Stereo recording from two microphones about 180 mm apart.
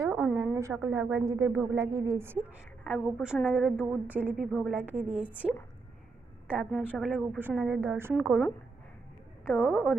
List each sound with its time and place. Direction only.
0.0 s a sound: 10° right (ahead or behind)
1.3 s a woman's voice: 20° right (ahead or behind)
2.8 s a woman's voice: centre (ahead or behind)
6.5 s a woman's voice: centre (ahead or behind)
9.5 s a woman's voice: centre (ahead or behind)